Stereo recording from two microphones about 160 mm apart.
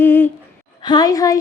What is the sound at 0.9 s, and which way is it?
Speech, 25° left (ahead or behind).